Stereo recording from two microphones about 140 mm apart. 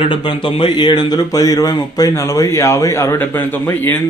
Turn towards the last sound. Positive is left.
turn(degrees=15)  # may be behind; listen again after turning